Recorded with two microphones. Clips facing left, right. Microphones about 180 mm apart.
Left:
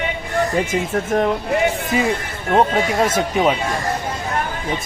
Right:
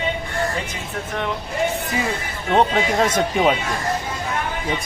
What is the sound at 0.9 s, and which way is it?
Speech, 45° left (ahead or behind).